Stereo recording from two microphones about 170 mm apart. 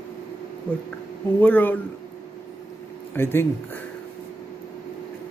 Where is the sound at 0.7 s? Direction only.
10° left (ahead or behind).